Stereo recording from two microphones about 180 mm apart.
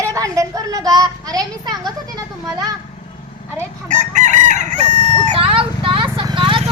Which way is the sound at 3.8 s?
45° right (ahead or behind).